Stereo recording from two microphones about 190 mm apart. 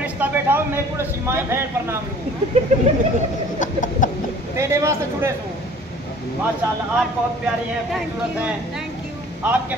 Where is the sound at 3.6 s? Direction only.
45° left (ahead or behind).